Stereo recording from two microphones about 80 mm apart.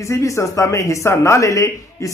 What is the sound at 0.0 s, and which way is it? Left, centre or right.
A man's voice, left.